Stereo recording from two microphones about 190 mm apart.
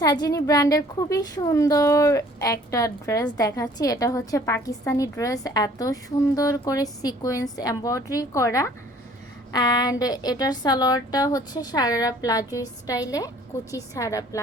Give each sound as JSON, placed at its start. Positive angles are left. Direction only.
{"t": 0.0, "sound": "a woman's voice", "side_deg": 20}